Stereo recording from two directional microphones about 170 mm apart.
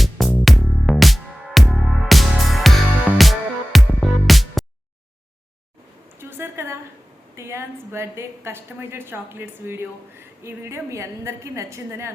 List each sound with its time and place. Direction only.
0.0 s music: 5° left (ahead or behind)
6.1 s a sound: 15° right (ahead or behind)
7.3 s a woman's voice: 15° right (ahead or behind)